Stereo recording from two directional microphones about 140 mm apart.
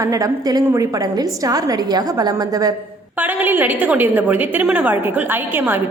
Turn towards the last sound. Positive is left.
turn(degrees=-15)  # may be behind; listen again after turning